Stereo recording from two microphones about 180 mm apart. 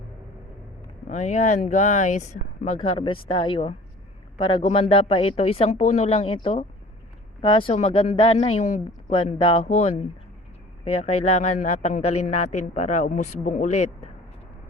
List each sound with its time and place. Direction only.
1.0 s speech: 40° left (ahead or behind)
2.8 s speech: 30° left (ahead or behind)
10.9 s speech: 35° left (ahead or behind)